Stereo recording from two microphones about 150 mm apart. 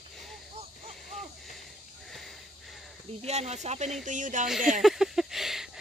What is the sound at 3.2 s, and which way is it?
Speech, 50° right (ahead or behind).